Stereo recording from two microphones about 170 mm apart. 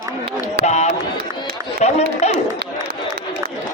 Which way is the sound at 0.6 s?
40° left (ahead or behind).